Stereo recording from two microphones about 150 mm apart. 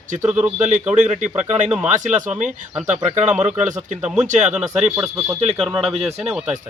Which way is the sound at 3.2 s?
10° right (ahead or behind).